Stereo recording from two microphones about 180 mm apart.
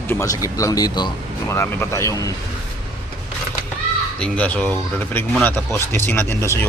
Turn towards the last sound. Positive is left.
turn(degrees=10)  # may be behind; listen again after turning